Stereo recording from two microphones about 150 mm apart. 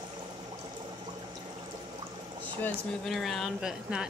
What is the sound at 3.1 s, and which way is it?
Speech, centre (ahead or behind).